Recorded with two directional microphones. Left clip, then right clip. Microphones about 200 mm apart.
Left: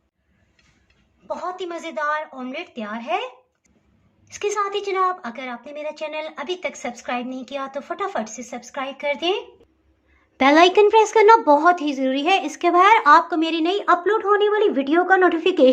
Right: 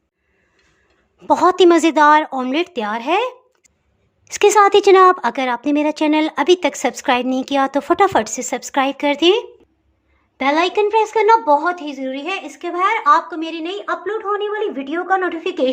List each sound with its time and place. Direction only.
1.3 s a woman's voice: 60° right (ahead or behind)
10.3 s a woman's voice: 10° left (ahead or behind)